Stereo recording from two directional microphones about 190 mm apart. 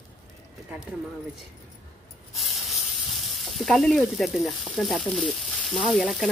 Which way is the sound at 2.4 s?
Centre (ahead or behind).